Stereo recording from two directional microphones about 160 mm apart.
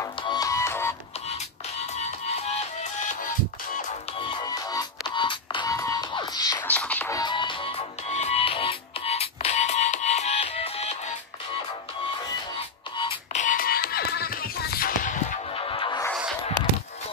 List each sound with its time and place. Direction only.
0.2 s music: 25° left (ahead or behind)
2.0 s music: 45° left (ahead or behind)
4.3 s music: 25° left (ahead or behind)
6.7 s music: 10° left (ahead or behind)
7.2 s music: 30° left (ahead or behind)
13.3 s music: 55° left (ahead or behind)
15.5 s music: 35° left (ahead or behind)